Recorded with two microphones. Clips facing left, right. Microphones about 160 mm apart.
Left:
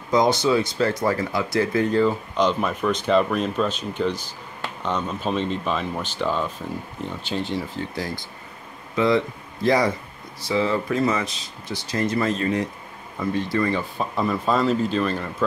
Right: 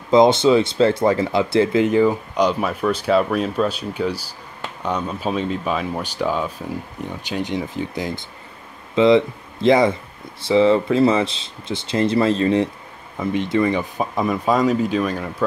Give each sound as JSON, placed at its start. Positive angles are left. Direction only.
{"t": 0.1, "sound": "speech", "side_deg": -25}